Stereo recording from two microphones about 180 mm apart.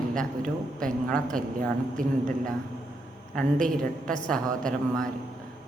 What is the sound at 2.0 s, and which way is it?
Speech, 50° right (ahead or behind).